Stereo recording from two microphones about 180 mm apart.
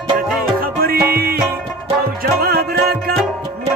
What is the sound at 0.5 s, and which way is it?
Music, 55° right (ahead or behind).